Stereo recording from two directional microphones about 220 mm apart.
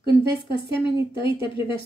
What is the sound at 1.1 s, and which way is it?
Speech, 25° left (ahead or behind).